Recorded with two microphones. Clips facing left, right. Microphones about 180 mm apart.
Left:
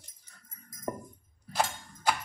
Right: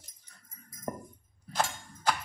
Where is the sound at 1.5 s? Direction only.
10° left (ahead or behind).